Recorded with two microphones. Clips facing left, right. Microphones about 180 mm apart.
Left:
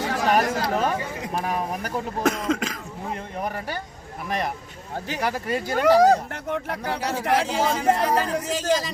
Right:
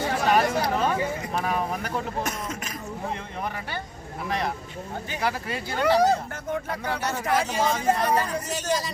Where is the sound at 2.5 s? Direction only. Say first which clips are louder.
Left 10 dB; 90° left.